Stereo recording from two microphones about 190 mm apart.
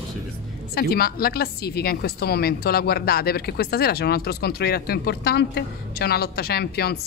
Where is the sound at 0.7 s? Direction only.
55° left (ahead or behind).